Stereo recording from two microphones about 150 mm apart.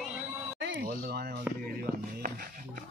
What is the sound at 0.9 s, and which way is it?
Speech, 90° right.